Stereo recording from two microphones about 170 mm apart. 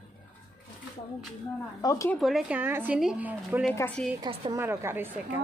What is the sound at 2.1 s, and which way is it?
Speech, centre (ahead or behind).